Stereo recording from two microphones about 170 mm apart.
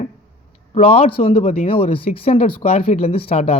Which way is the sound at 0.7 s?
35° left (ahead or behind).